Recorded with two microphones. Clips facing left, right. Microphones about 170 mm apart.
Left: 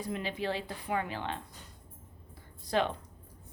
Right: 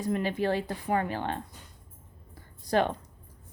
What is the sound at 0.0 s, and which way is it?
Speech, 50° right (ahead or behind).